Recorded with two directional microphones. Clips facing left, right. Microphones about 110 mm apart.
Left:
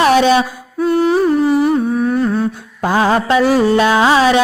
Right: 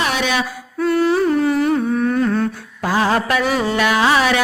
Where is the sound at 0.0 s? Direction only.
40° left (ahead or behind).